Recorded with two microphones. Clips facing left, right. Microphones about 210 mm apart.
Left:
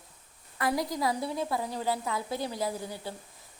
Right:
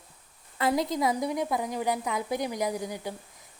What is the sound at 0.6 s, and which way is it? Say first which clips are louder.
A woman's voice: right 3 dB; 25° right (ahead or behind).